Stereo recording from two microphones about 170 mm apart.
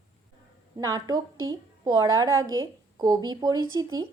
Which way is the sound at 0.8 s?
20° right (ahead or behind).